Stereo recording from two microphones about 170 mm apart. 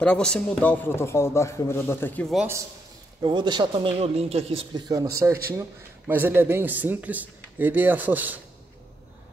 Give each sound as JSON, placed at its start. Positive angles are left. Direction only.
{"t": 0.0, "sound": "speech", "side_deg": 5}
{"t": 2.3, "sound": "a man's voice", "side_deg": -10}
{"t": 3.2, "sound": "a man's voice", "side_deg": -25}